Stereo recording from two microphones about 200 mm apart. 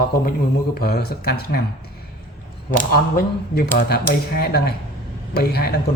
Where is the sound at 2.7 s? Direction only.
45° left (ahead or behind).